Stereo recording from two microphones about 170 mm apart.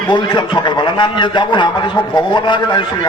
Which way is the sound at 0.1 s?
25° left (ahead or behind).